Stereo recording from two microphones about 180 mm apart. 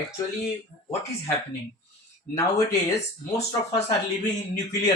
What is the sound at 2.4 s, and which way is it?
Speech, 20° left (ahead or behind).